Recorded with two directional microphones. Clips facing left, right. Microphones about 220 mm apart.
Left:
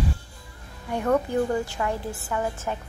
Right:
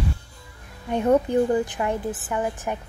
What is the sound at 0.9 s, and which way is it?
A woman's voice, 20° right (ahead or behind).